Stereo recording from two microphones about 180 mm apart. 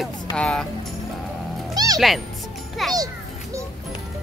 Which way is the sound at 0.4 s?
5° left (ahead or behind).